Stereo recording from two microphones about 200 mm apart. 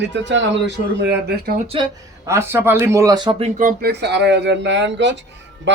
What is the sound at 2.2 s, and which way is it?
A man's voice, 15° right (ahead or behind).